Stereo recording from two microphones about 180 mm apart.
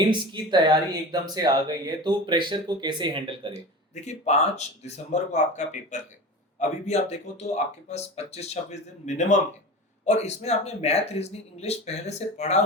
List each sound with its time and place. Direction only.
0.0 s speech: 25° right (ahead or behind)
4.0 s speech: 40° left (ahead or behind)